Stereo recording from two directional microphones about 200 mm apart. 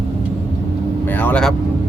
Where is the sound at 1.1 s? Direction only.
10° left (ahead or behind).